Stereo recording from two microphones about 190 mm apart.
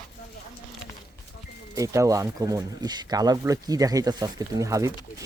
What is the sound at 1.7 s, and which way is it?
Speech, 15° right (ahead or behind).